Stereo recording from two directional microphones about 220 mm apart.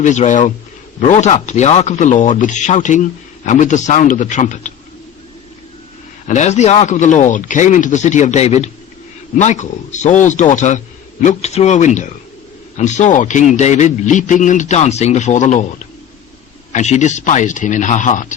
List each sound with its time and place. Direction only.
0.0 s speech: 35° left (ahead or behind)
6.2 s speech: 30° left (ahead or behind)
16.7 s speech: 30° left (ahead or behind)